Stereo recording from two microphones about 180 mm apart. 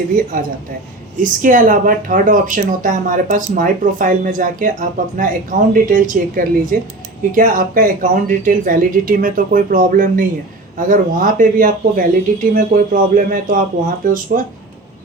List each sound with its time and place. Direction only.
1.2 s speech: 50° right (ahead or behind)